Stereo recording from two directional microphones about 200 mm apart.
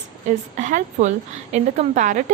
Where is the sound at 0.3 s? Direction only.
35° right (ahead or behind).